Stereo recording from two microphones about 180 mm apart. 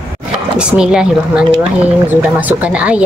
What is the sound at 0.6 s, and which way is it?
A woman's voice, 5° right (ahead or behind).